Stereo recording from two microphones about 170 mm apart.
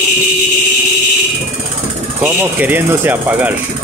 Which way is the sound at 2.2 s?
10° right (ahead or behind).